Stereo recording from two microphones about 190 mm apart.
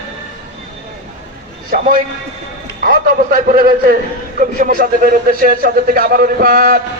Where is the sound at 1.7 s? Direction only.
45° right (ahead or behind).